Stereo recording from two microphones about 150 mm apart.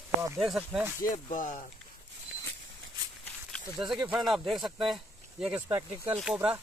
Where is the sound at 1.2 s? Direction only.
55° left (ahead or behind).